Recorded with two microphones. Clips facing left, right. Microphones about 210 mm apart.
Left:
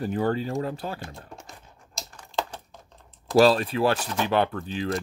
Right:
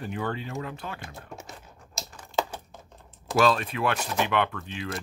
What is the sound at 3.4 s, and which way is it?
Speech, 35° left (ahead or behind).